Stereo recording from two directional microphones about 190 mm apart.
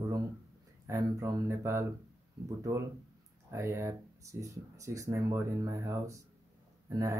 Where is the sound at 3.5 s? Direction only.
15° right (ahead or behind).